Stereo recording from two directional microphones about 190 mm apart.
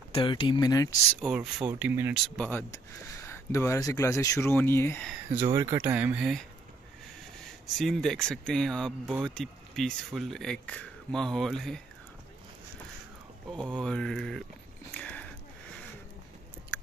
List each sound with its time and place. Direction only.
0.1 s speech: 25° left (ahead or behind)
1.1 s speech: centre (ahead or behind)
2.3 s speech: 10° left (ahead or behind)
5.3 s speech: 15° right (ahead or behind)
7.6 s speech: centre (ahead or behind)
13.7 s speech: 5° left (ahead or behind)
14.9 s a sound: 5° left (ahead or behind)